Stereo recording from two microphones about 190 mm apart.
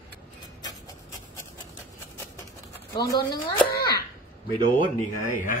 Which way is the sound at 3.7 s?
55° left (ahead or behind).